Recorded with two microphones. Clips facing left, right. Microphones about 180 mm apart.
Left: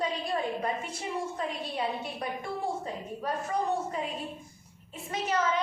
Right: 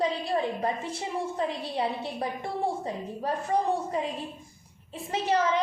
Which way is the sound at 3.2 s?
30° right (ahead or behind).